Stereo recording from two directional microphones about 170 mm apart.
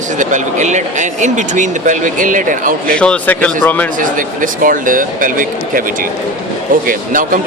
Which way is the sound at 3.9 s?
50° right (ahead or behind).